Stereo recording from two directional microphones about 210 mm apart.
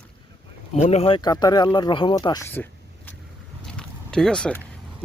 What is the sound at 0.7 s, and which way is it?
Speech, 30° left (ahead or behind).